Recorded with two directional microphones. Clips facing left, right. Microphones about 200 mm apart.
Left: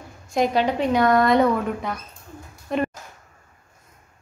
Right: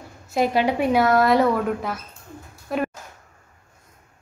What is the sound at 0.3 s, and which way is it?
Speech, 5° right (ahead or behind).